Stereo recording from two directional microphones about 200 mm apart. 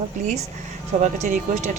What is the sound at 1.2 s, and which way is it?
Speech, 35° right (ahead or behind).